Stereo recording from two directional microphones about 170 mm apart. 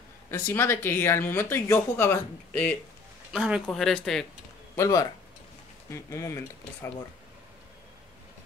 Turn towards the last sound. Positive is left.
turn(degrees=15)  # may be behind; listen again after turning